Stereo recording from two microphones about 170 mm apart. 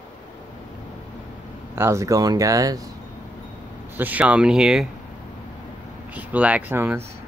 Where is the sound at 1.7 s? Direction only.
15° right (ahead or behind).